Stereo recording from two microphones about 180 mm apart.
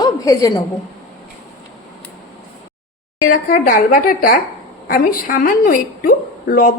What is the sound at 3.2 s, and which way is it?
A woman's voice, 50° left (ahead or behind).